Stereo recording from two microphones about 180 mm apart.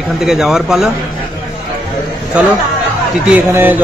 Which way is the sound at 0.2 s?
5° right (ahead or behind).